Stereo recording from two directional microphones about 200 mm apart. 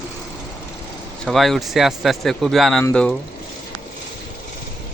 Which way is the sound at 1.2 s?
Centre (ahead or behind).